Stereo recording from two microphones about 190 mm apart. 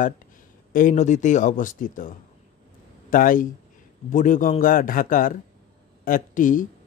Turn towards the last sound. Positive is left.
turn(degrees=45)  # may be behind; listen again after turning